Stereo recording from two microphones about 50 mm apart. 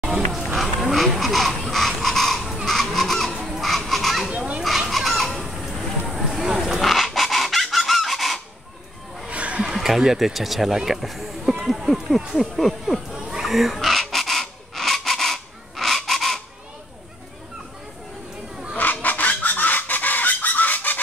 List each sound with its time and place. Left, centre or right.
0.0 s run: centre
0.6 s a sound: centre
2.6 s honk: centre
3.4 s goose: centre
4.3 s goat: centre
4.6 s fowl: centre
5.7 s dog: centre
9.3 s a sound: right
9.8 s speech: centre
11.6 s a sound: centre
13.4 s bird: centre
18.8 s chicken: left